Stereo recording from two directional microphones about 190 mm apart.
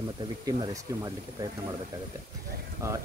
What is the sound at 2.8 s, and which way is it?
Speech, 15° right (ahead or behind).